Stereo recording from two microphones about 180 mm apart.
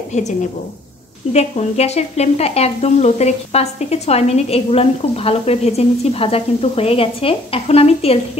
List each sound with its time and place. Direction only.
0.1 s speech: 40° left (ahead or behind)